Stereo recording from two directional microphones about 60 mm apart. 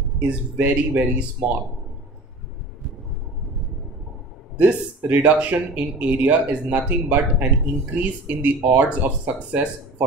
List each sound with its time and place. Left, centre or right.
0.6 s speech: right
4.6 s speech: right